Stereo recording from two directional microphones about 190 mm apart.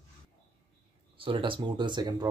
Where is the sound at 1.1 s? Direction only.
25° right (ahead or behind).